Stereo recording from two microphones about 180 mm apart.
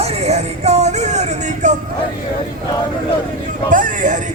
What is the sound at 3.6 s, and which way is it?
Speech, 45° right (ahead or behind).